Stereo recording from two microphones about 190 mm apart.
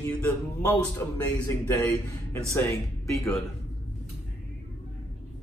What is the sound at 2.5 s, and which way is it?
Speech, 15° left (ahead or behind).